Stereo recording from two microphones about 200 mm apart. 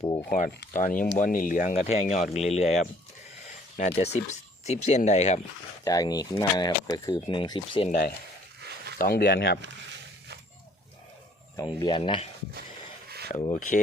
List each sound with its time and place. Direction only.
0.0 s speech: 20° left (ahead or behind)
0.3 s speech: 40° left (ahead or behind)
3.9 s speech: 30° left (ahead or behind)
5.8 s speech: 20° left (ahead or behind)
8.6 s a sound: 55° right (ahead or behind)
9.0 s speech: 50° left (ahead or behind)
11.5 s speech: 20° left (ahead or behind)
13.6 s speech: 45° left (ahead or behind)